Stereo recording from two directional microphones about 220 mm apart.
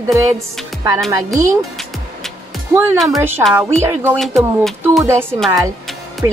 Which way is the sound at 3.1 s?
10° right (ahead or behind).